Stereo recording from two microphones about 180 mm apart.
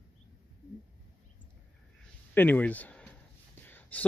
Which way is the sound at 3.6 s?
10° left (ahead or behind).